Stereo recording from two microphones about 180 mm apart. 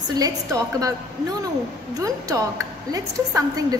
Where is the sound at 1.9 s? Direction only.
20° right (ahead or behind).